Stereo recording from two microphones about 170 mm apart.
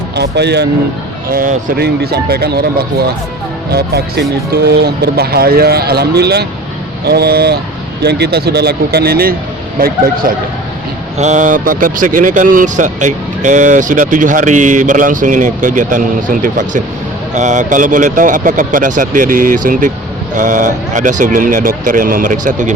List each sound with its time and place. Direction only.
0.2 s speech: 80° right
1.3 s a man's voice: 60° right (ahead or behind)
11.2 s speech: 45° right (ahead or behind)